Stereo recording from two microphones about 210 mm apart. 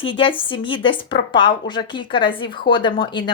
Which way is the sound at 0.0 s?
25° left (ahead or behind).